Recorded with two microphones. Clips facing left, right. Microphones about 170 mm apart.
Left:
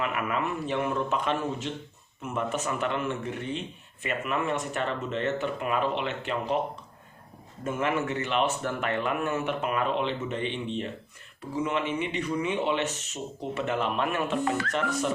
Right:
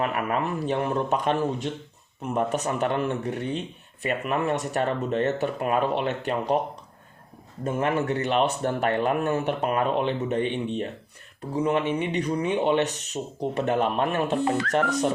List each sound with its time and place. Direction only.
0.0 s speech: 40° right (ahead or behind)
7.6 s speech: 35° right (ahead or behind)
14.7 s speech: 40° right (ahead or behind)